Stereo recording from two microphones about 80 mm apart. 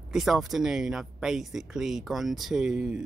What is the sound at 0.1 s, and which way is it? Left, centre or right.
Speech, centre.